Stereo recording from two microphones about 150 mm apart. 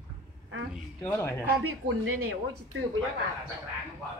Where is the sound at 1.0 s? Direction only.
15° left (ahead or behind).